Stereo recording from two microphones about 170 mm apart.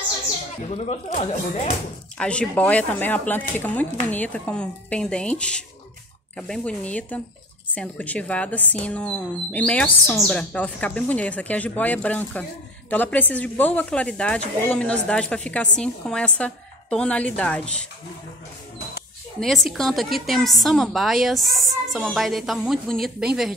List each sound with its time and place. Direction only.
0.7 s speech: 45° left (ahead or behind)
2.1 s speech: 5° left (ahead or behind)
19.4 s a woman's voice: centre (ahead or behind)